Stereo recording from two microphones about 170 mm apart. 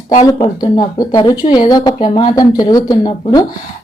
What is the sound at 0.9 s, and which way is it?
A woman's voice, 25° left (ahead or behind).